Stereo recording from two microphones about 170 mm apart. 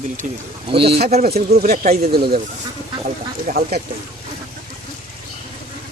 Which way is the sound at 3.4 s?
65° right (ahead or behind).